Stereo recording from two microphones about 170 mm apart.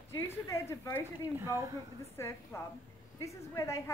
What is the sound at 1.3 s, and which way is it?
Speech, 15° right (ahead or behind).